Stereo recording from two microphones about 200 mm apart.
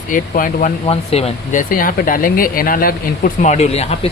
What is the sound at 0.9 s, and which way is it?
Speech, 30° left (ahead or behind).